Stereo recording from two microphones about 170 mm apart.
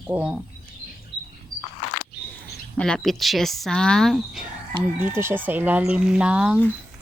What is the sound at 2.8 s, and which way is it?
Speech, 5° left (ahead or behind).